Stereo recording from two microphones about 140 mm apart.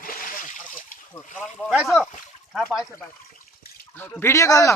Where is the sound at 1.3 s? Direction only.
10° right (ahead or behind).